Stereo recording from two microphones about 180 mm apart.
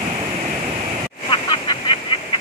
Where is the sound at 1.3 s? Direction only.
25° left (ahead or behind).